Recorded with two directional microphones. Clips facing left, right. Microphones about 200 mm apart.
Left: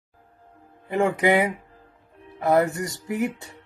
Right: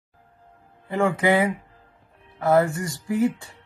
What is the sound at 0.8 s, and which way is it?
Speech, 20° left (ahead or behind).